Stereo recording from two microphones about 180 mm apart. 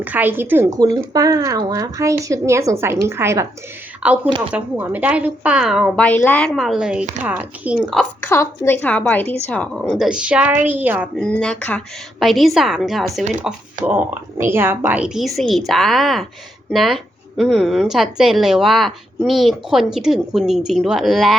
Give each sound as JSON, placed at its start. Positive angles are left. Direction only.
{"t": 0.0, "sound": "speech", "side_deg": -10}
{"t": 7.9, "sound": "a woman's voice", "side_deg": 10}
{"t": 11.2, "sound": "speech", "side_deg": 5}